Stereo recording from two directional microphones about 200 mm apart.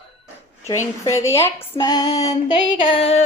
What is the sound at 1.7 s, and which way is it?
Female singing, 20° left (ahead or behind).